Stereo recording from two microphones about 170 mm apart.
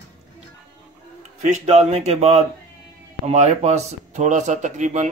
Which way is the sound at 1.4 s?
45° right (ahead or behind).